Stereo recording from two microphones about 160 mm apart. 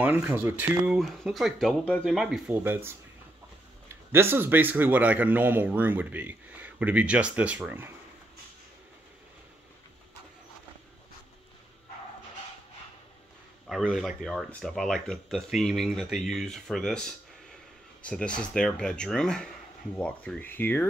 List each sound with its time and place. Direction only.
0.0 s speech: 10° right (ahead or behind)
2.5 s speech: 15° right (ahead or behind)
13.7 s speech: centre (ahead or behind)